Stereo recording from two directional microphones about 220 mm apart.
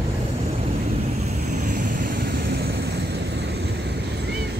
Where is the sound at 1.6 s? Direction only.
35° right (ahead or behind); by 3.7 s 50° right (ahead or behind).